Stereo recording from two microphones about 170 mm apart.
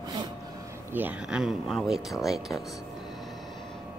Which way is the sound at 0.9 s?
10° right (ahead or behind).